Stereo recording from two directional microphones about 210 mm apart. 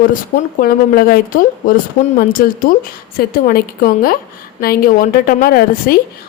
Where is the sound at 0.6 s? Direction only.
45° left (ahead or behind).